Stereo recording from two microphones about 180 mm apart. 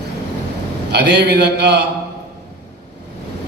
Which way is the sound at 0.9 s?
70° right (ahead or behind).